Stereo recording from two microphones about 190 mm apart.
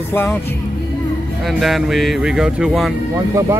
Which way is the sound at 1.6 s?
Centre (ahead or behind).